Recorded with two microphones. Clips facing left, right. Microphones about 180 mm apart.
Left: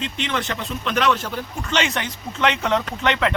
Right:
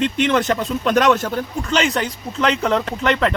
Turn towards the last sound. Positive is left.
turn(degrees=-40)  # may be behind; listen again after turning